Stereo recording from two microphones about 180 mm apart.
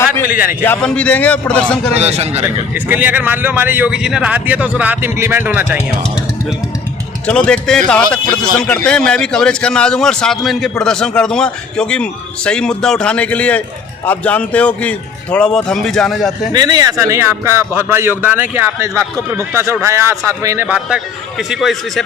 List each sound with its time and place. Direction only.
0.6 s a man's voice: 10° left (ahead or behind)
2.0 s a man's voice: 35° right (ahead or behind)
2.7 s a man's voice: 10° right (ahead or behind)
7.3 s a man's voice: 5° left (ahead or behind)
16.5 s a man's voice: 20° right (ahead or behind); by 22.0 s centre (ahead or behind)